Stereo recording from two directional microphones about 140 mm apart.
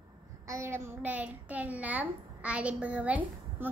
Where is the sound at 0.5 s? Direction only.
20° right (ahead or behind).